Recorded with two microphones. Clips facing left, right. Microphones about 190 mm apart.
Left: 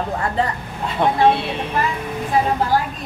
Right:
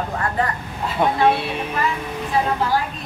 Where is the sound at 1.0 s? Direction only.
10° right (ahead or behind).